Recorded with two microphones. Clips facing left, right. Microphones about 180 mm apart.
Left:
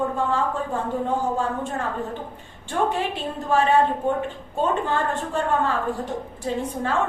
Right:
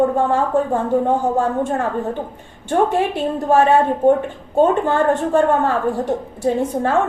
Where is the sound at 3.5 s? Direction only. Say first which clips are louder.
Right 5 dB; 45° right (ahead or behind).